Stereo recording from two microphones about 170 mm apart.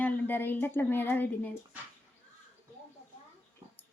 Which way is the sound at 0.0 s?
10° left (ahead or behind).